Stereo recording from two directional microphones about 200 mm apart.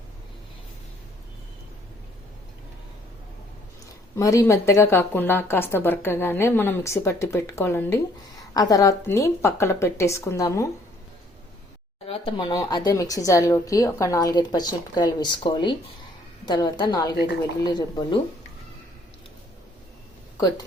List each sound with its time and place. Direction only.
4.2 s a woman's voice: 15° left (ahead or behind)
12.0 s a woman's voice: 25° left (ahead or behind)